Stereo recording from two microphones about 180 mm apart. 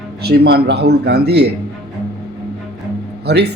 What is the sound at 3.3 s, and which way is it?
Speech, 65° right (ahead or behind).